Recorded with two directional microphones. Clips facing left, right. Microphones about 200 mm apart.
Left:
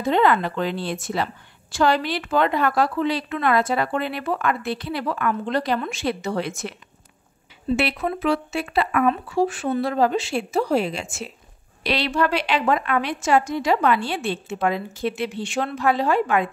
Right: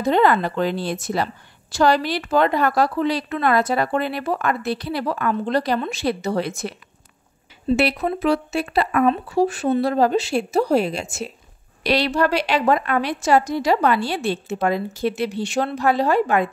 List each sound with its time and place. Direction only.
0.0 s a woman's voice: 40° right (ahead or behind)
7.7 s a woman's voice: 40° right (ahead or behind)